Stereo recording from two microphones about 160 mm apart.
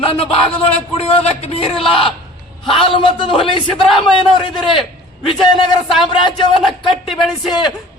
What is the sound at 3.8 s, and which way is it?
Speech, centre (ahead or behind).